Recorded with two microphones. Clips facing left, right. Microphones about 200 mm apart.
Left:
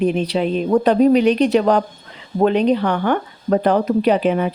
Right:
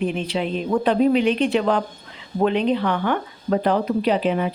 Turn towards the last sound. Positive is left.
turn(degrees=50)  # may be behind; listen again after turning